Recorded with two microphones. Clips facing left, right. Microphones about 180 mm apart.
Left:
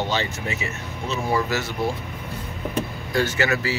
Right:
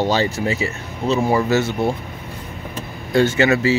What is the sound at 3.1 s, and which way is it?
Speech, 25° right (ahead or behind).